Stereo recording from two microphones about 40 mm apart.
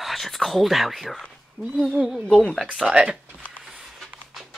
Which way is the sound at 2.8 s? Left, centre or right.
Right.